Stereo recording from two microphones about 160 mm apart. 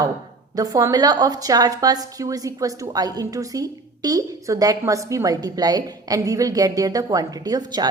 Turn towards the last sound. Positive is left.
turn(degrees=-25)  # may be behind; listen again after turning